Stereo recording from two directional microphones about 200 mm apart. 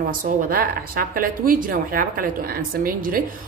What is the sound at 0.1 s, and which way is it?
A woman's voice, 45° right (ahead or behind).